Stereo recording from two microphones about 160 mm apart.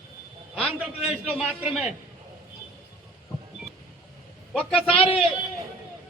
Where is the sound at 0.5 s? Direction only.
5° right (ahead or behind).